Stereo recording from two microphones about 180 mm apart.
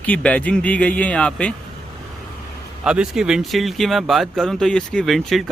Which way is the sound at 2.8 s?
5° right (ahead or behind).